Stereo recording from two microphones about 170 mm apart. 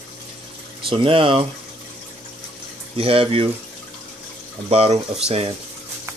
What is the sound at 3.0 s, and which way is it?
Speech, 35° right (ahead or behind).